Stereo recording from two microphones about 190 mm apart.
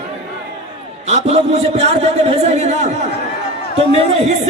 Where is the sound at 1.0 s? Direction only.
35° right (ahead or behind).